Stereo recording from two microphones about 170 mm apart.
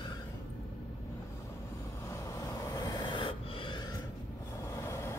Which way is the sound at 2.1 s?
20° left (ahead or behind).